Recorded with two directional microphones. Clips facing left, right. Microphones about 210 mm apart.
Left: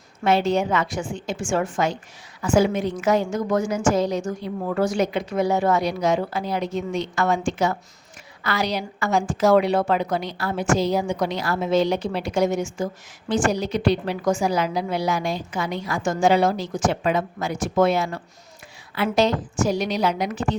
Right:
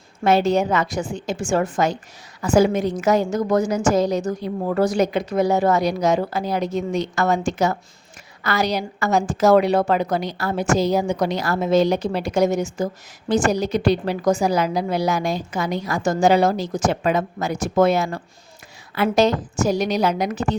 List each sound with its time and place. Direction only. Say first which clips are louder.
0.3 s a woman's voice: right 3 dB; 40° right (ahead or behind)